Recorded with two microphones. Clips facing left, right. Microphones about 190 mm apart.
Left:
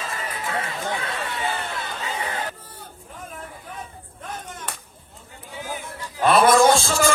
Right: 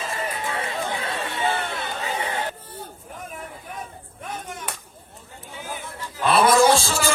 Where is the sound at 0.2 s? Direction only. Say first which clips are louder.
Even; 30° right (ahead or behind).